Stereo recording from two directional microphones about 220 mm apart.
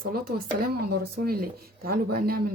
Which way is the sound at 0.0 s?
40° right (ahead or behind).